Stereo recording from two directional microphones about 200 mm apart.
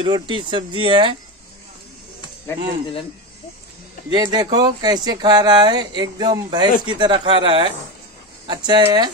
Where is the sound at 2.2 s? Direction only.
20° left (ahead or behind).